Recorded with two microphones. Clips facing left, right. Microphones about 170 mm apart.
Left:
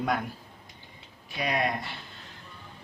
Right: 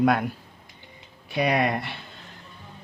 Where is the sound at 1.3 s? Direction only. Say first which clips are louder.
Right 6 dB; 65° right (ahead or behind).